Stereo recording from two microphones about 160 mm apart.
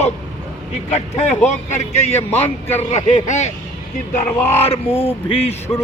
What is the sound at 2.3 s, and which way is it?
Speech, 15° left (ahead or behind).